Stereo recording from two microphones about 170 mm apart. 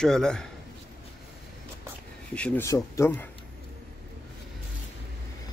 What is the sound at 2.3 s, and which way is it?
Speech, 5° left (ahead or behind).